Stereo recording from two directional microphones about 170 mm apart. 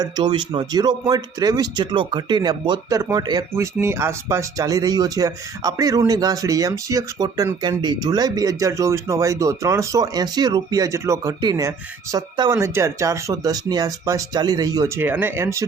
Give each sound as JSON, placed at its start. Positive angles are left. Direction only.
{"t": 0.0, "sound": "speech", "side_deg": -25}